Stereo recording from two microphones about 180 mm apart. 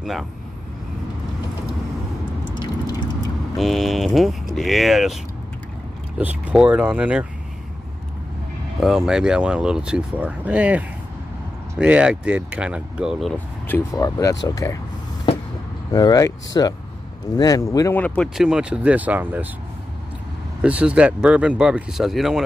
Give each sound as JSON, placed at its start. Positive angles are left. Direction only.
{"t": 0.0, "sound": "speech", "side_deg": 0}
{"t": 2.5, "sound": "a sound", "side_deg": 25}
{"t": 3.5, "sound": "speech", "side_deg": 0}
{"t": 8.7, "sound": "speech", "side_deg": 0}
{"t": 13.7, "sound": "speech", "side_deg": 15}
{"t": 15.9, "sound": "speech", "side_deg": 20}
{"t": 20.6, "sound": "speech", "side_deg": -5}